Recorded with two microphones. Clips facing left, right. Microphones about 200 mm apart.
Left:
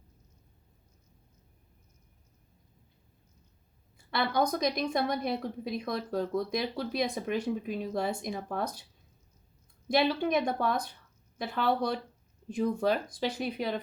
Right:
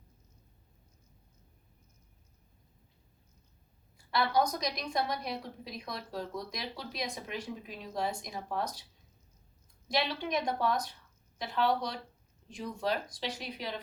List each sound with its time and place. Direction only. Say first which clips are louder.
4.1 s speech: left 1 dB; 55° left (ahead or behind)
9.9 s speech: left 6 dB; 55° left (ahead or behind)